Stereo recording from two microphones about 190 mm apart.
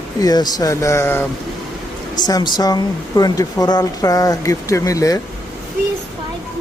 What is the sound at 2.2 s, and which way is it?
Speech, 20° left (ahead or behind).